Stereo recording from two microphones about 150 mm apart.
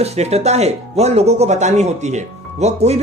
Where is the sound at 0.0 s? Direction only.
45° right (ahead or behind).